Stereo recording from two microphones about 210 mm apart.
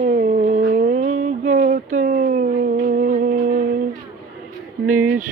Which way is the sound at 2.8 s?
40° right (ahead or behind).